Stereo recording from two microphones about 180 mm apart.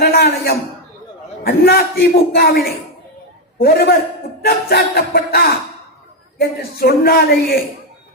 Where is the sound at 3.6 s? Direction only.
60° left (ahead or behind).